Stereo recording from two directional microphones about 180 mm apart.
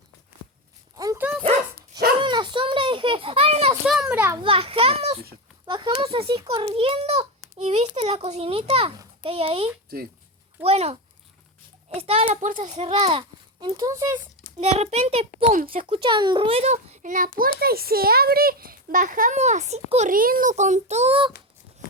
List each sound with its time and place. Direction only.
0.9 s dog: 20° right (ahead or behind)
2.2 s a sound: 25° right (ahead or behind)
3.8 s a child's voice: 5° right (ahead or behind)
4.4 s speech: 30° right (ahead or behind)
5.6 s speech: 25° right (ahead or behind)
11.9 s speech: 35° right (ahead or behind); by 14.2 s 15° right (ahead or behind)
14.6 s speech: 35° right (ahead or behind)
15.6 s a child's voice: 50° right (ahead or behind)
15.9 s a child's voice: 30° right (ahead or behind)